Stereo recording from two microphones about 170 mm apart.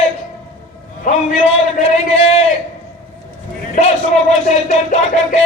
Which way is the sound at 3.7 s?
40° left (ahead or behind).